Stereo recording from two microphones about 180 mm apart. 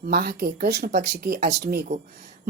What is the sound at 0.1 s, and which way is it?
A woman's voice, 60° right (ahead or behind).